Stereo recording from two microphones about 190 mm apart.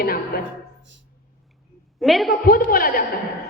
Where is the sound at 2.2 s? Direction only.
50° left (ahead or behind).